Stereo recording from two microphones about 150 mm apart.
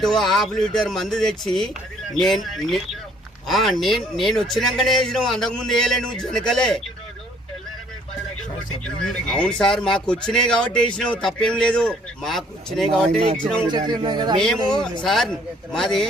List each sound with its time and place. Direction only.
0.0 s a man's voice: centre (ahead or behind)
8.8 s a man's voice: 5° left (ahead or behind)
13.2 s speech: 60° right (ahead or behind)
13.7 s a man's voice: 30° right (ahead or behind)
14.8 s a man's voice: centre (ahead or behind)